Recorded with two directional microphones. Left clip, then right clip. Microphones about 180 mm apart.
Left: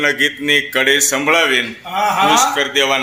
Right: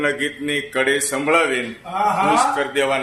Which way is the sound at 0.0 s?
15° left (ahead or behind).